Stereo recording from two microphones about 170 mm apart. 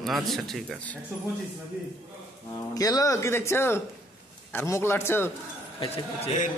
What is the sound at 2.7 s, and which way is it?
Speech, 20° left (ahead or behind).